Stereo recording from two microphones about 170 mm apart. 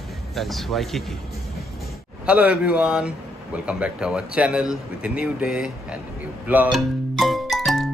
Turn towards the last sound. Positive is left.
turn(degrees=0)  # may be behind; listen again after turning